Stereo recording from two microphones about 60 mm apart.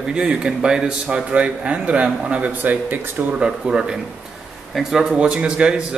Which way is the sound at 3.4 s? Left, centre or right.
Centre.